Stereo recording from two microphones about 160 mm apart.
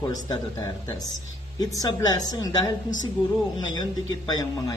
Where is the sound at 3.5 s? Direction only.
25° left (ahead or behind).